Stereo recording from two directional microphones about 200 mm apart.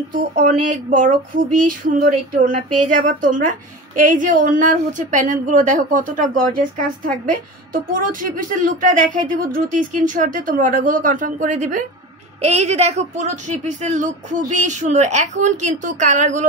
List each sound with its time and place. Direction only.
0.1 s a woman's voice: 45° right (ahead or behind)